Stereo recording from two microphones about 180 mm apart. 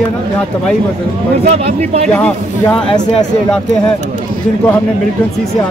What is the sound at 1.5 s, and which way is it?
Speech, 35° right (ahead or behind).